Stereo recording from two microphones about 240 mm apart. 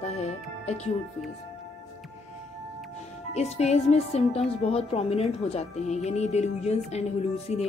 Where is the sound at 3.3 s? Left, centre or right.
Left.